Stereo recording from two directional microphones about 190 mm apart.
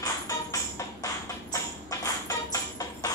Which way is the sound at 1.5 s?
20° left (ahead or behind).